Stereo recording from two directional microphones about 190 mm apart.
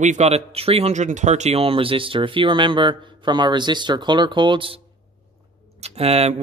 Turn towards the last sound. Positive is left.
turn(degrees=-35)  # may be behind; listen again after turning